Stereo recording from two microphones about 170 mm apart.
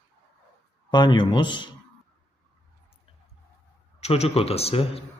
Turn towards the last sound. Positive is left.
turn(degrees=35)  # may be behind; listen again after turning